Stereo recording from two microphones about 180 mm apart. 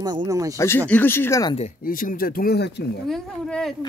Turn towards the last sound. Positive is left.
turn(degrees=5)  # may be behind; listen again after turning